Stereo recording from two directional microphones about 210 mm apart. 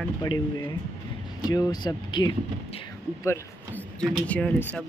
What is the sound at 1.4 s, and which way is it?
Speech, 15° left (ahead or behind).